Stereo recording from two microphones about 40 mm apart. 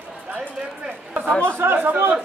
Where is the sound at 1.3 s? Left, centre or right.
Left.